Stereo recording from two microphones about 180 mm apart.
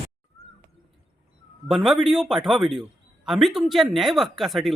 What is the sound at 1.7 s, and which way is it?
Speech, centre (ahead or behind).